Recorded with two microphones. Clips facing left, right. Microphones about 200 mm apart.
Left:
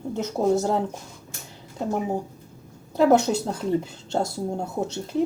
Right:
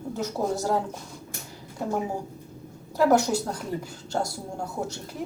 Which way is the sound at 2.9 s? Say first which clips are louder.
Left 3 dB; 25° left (ahead or behind).